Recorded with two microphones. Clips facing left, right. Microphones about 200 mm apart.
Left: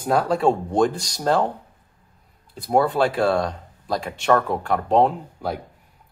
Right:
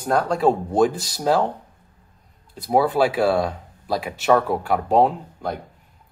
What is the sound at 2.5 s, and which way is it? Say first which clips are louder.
Speech: right 1 dB; centre (ahead or behind).